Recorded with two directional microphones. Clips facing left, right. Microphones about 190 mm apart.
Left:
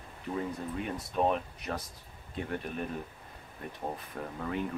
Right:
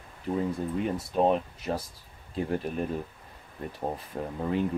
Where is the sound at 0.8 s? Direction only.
30° right (ahead or behind).